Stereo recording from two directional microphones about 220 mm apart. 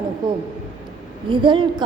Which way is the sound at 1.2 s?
20° right (ahead or behind).